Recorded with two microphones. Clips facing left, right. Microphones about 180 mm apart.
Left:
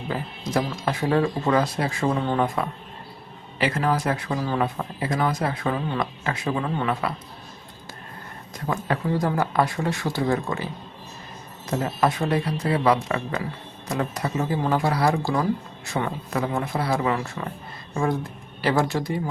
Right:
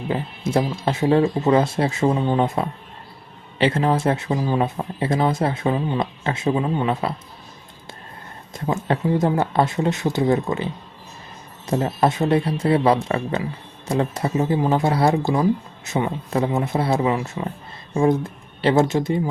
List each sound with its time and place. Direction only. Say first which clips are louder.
0.1 s speech: right 4 dB; 25° right (ahead or behind)
8.5 s speech: right 4 dB; 25° right (ahead or behind)